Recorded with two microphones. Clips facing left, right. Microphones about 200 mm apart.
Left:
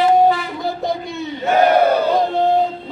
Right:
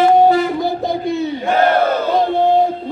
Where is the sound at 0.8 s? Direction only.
Centre (ahead or behind).